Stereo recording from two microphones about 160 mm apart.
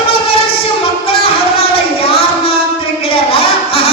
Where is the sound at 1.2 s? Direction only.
35° left (ahead or behind).